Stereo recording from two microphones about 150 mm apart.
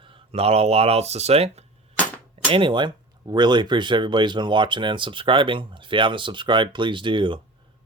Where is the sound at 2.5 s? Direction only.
35° right (ahead or behind).